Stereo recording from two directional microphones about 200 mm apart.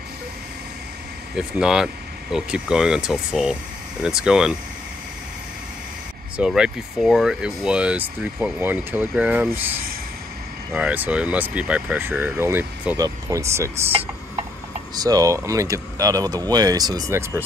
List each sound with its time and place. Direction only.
1.3 s speech: 5° right (ahead or behind)
6.3 s speech: 5° right (ahead or behind)
10.7 s speech: 5° right (ahead or behind)
15.0 s speech: 20° right (ahead or behind)